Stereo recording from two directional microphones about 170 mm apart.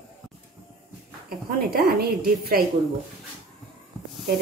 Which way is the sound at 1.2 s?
60° right (ahead or behind).